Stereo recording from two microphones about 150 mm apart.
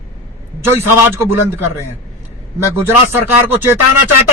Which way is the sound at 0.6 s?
15° right (ahead or behind).